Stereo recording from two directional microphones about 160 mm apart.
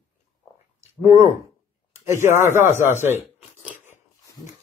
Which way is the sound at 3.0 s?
15° right (ahead or behind).